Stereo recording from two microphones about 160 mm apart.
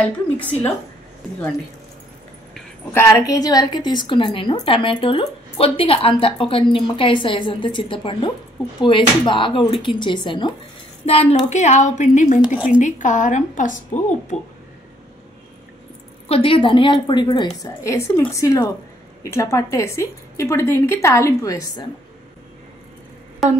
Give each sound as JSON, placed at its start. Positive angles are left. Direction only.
{"t": 0.0, "sound": "a woman's voice", "side_deg": 10}
{"t": 2.9, "sound": "a woman's voice", "side_deg": 20}
{"t": 11.0, "sound": "a woman's voice", "side_deg": 45}
{"t": 16.3, "sound": "a woman's voice", "side_deg": 35}
{"t": 23.4, "sound": "a sound", "side_deg": 0}